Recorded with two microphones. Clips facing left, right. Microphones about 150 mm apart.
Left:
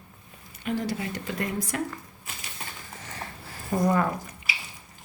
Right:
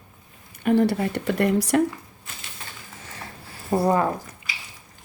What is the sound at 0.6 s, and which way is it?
Speech, 55° right (ahead or behind).